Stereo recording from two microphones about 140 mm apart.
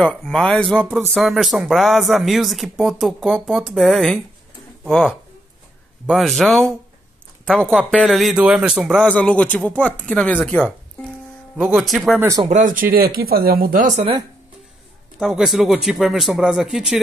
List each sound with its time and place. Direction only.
0.0 s speech: 5° left (ahead or behind)
9.0 s a woman's voice: 10° left (ahead or behind)
11.5 s speech: 5° right (ahead or behind)
12.2 s speech: 25° right (ahead or behind)
12.4 s speech: 65° right (ahead or behind)
15.1 s speech: centre (ahead or behind)